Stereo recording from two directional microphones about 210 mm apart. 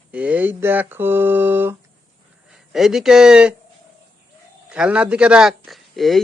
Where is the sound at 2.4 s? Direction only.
Centre (ahead or behind).